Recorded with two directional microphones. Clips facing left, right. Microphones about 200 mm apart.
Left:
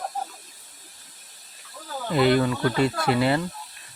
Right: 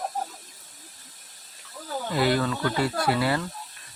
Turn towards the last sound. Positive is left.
turn(degrees=20)  # may be behind; listen again after turning